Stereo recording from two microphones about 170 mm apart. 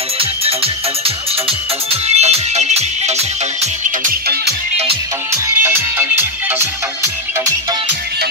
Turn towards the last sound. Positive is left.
turn(degrees=-10)  # may be behind; listen again after turning